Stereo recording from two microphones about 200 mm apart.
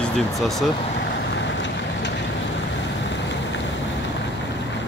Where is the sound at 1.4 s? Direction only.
65° left (ahead or behind).